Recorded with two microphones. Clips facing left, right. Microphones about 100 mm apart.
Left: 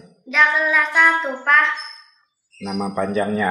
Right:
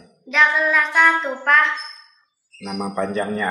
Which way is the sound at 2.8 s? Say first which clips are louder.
Left 2 dB; 5° left (ahead or behind).